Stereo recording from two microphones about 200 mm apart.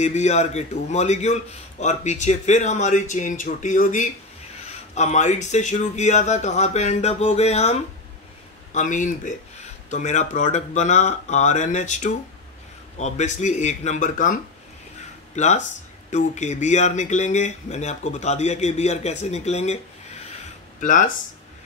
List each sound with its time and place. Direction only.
0.0 s a man's voice: 35° left (ahead or behind)
8.7 s a man's voice: 40° left (ahead or behind)
15.3 s a man's voice: 35° left (ahead or behind)
20.8 s a man's voice: 40° left (ahead or behind)